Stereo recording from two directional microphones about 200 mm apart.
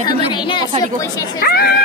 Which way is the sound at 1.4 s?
50° left (ahead or behind).